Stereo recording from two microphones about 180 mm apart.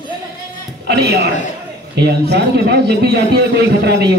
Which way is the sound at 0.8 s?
65° right (ahead or behind).